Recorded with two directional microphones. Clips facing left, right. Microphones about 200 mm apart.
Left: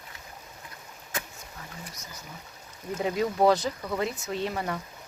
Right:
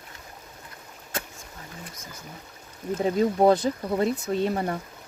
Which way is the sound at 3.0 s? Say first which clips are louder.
Right 4 dB; 30° right (ahead or behind).